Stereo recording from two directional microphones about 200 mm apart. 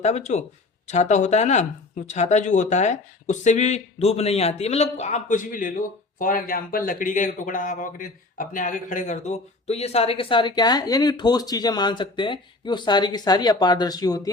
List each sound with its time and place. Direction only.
0.0 s a man's voice: 35° left (ahead or behind); by 14.3 s 20° left (ahead or behind)